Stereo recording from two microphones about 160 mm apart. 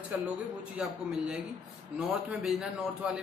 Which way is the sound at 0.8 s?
5° right (ahead or behind).